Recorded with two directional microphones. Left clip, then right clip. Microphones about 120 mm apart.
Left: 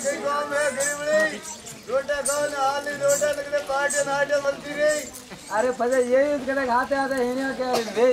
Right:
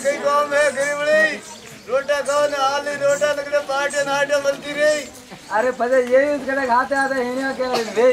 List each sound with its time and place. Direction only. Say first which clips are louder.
0.5 s a sound: right 6 dB; 20° right (ahead or behind)
2.0 s speech: right 6 dB; 15° right (ahead or behind)
5.5 s speech: right 4 dB; centre (ahead or behind)